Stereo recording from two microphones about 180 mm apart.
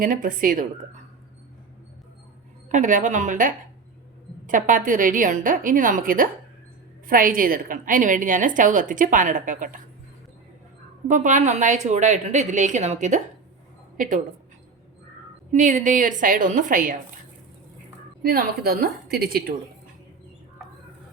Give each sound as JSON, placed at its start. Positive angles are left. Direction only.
{"t": 0.0, "sound": "a woman's voice", "side_deg": -45}
{"t": 2.6, "sound": "a woman's voice", "side_deg": -45}
{"t": 11.1, "sound": "a woman's voice", "side_deg": -45}
{"t": 15.5, "sound": "a woman's voice", "side_deg": -45}
{"t": 18.2, "sound": "a woman's voice", "side_deg": -55}